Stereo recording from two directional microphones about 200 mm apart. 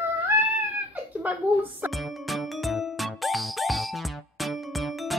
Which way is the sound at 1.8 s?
Centre (ahead or behind).